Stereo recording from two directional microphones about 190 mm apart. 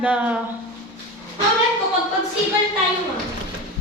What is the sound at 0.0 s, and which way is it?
Speech, 5° right (ahead or behind).